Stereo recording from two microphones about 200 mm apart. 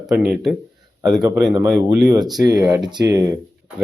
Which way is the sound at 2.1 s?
20° right (ahead or behind).